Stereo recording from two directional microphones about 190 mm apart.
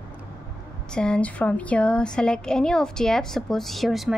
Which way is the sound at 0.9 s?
5° left (ahead or behind).